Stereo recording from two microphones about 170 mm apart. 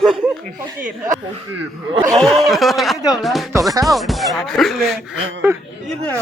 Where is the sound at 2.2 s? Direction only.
Centre (ahead or behind).